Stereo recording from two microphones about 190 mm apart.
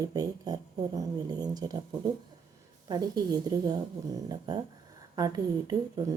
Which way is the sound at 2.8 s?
20° right (ahead or behind).